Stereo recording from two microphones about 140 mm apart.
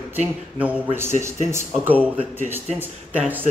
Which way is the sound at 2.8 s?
10° right (ahead or behind).